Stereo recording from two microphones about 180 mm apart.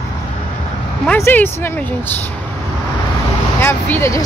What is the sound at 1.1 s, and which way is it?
Speech, 10° left (ahead or behind).